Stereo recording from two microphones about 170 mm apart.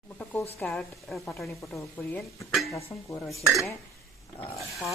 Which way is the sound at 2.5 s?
Centre (ahead or behind).